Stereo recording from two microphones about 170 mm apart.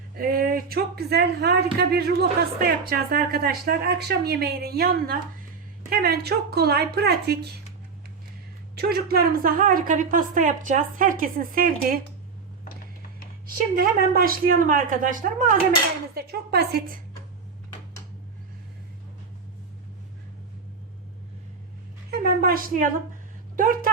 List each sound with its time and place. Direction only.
0.2 s speech: 60° right (ahead or behind)
8.7 s a woman's voice: 65° right (ahead or behind)
13.7 s a man's voice: 60° right (ahead or behind)
16.1 s speech: 70° right (ahead or behind)
22.2 s a sound: 60° right (ahead or behind)
23.6 s a man's voice: 55° right (ahead or behind)